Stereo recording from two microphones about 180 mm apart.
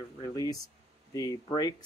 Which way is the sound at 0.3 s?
20° left (ahead or behind).